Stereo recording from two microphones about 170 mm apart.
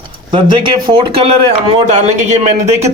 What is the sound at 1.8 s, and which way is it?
Speech, 40° right (ahead or behind).